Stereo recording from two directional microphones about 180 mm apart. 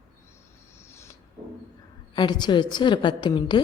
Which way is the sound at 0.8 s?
15° left (ahead or behind).